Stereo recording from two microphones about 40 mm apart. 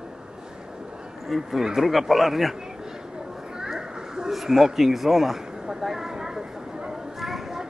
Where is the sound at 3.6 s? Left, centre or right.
Centre.